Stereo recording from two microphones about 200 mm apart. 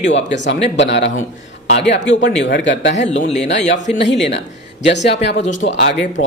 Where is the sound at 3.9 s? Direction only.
60° left (ahead or behind).